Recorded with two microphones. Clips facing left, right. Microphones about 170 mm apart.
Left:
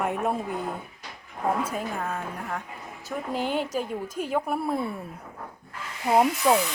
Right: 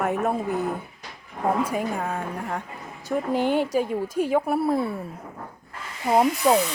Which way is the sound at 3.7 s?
10° right (ahead or behind).